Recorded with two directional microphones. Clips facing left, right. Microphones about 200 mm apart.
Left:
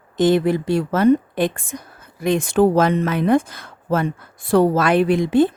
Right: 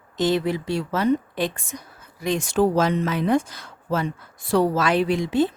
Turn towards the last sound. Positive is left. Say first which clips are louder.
# left 5 dB
turn(degrees=55)  # may be behind; listen again after turning